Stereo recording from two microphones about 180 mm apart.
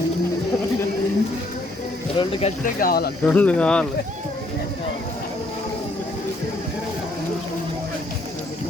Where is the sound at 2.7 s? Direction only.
55° left (ahead or behind).